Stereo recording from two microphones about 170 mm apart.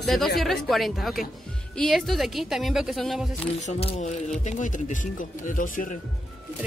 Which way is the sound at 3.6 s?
40° left (ahead or behind).